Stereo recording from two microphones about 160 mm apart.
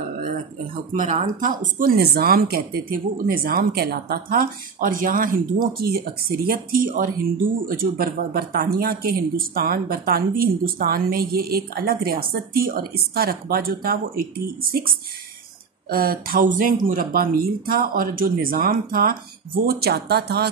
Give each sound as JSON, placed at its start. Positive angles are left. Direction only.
{"t": 0.9, "sound": "speech", "side_deg": -55}
{"t": 15.9, "sound": "speech", "side_deg": -65}